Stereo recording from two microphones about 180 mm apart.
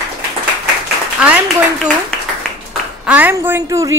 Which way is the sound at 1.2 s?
5° right (ahead or behind).